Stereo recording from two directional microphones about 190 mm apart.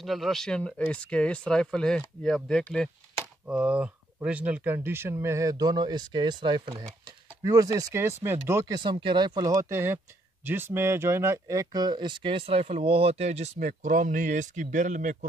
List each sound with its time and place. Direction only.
0.0 s speech: centre (ahead or behind); by 15.1 s 40° right (ahead or behind)